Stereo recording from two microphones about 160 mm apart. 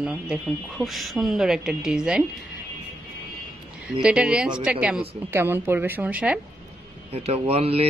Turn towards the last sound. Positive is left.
turn(degrees=-40)  # may be behind; listen again after turning